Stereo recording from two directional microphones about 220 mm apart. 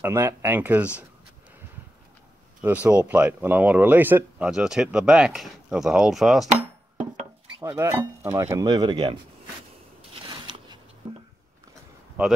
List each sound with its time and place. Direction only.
0.0 s speech: 10° right (ahead or behind)
2.6 s speech: 5° right (ahead or behind)
7.6 s speech: 15° right (ahead or behind)
10.3 s biting: 20° right (ahead or behind)